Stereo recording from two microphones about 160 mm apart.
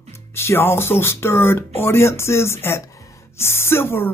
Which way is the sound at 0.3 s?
15° left (ahead or behind).